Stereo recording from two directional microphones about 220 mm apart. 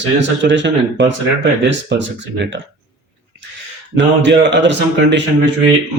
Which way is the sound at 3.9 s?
55° right (ahead or behind).